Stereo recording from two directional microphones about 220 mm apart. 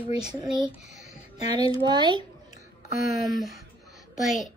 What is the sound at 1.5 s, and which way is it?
Speech, 20° right (ahead or behind).